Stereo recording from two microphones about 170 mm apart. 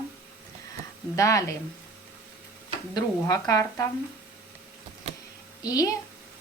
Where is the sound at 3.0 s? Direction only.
20° left (ahead or behind).